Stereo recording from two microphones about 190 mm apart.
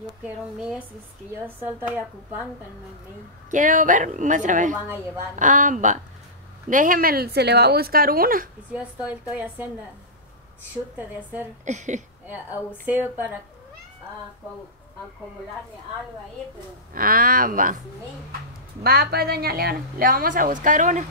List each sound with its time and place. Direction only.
0.2 s a woman's voice: 5° right (ahead or behind)
3.4 s a woman's voice: 40° right (ahead or behind)
9.3 s a woman's voice: 5° right (ahead or behind)
11.6 s speech: 40° right (ahead or behind)
12.3 s a woman's voice: 10° right (ahead or behind)
16.9 s a woman's voice: 50° right (ahead or behind)
18.8 s a woman's voice: 55° right (ahead or behind)